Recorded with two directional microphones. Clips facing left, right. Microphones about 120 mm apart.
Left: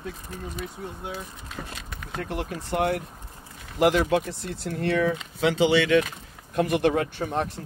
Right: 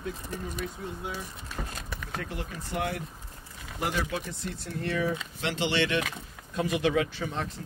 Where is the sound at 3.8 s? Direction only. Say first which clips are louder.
Left 10 dB; 80° left.